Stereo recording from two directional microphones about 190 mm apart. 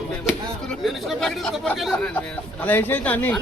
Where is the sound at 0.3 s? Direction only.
Centre (ahead or behind).